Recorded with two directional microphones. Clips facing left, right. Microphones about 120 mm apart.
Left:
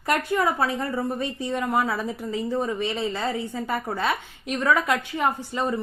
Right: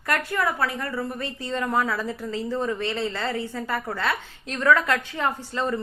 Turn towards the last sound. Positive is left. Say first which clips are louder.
# left 1 dB
turn(degrees=15)  # may be behind; listen again after turning